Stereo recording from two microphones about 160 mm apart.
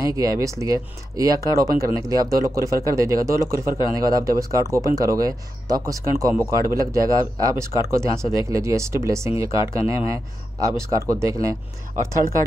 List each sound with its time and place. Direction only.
0.2 s speech: 20° right (ahead or behind)